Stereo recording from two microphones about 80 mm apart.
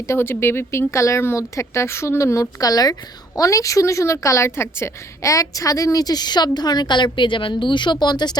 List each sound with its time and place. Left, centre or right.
0.0 s speech: left